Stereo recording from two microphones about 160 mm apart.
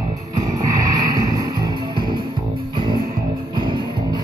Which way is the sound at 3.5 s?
30° right (ahead or behind).